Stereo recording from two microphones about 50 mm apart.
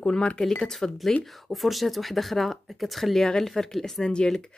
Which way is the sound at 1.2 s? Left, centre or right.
Centre.